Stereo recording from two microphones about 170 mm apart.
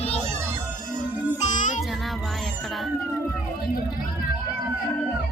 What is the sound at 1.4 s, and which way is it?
Music, 45° left (ahead or behind).